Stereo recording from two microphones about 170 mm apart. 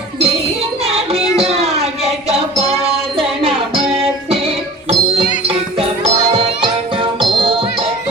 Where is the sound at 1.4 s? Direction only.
35° right (ahead or behind).